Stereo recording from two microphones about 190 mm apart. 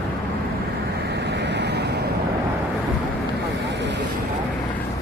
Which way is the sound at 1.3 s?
65° right (ahead or behind).